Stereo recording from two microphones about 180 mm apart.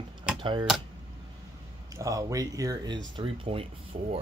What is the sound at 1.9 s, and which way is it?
Speech, 20° right (ahead or behind).